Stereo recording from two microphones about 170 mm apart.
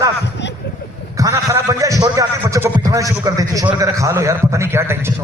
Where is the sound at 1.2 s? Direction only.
20° right (ahead or behind).